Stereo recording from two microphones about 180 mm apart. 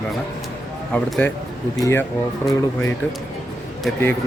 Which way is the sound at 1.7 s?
20° left (ahead or behind).